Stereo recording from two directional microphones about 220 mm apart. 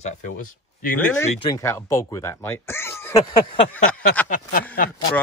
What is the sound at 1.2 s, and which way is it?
Speech, 25° left (ahead or behind).